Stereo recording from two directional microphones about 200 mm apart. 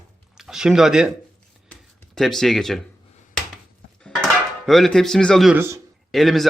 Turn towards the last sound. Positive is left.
turn(degrees=0)  # may be behind; listen again after turning